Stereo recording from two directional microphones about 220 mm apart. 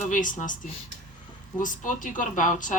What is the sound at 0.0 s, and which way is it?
Speech, 35° left (ahead or behind).